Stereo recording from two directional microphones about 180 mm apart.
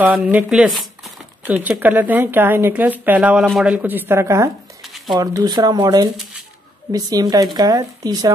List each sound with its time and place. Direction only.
0.0 s speech: 10° right (ahead or behind)
4.8 s a sound: centre (ahead or behind)
5.1 s speech: 20° right (ahead or behind)